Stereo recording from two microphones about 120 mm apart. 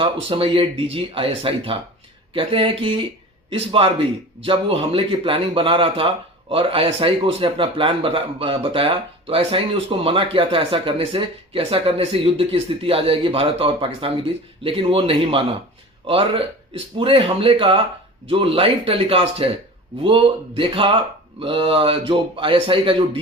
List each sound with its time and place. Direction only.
0.0 s speech: 50° right (ahead or behind)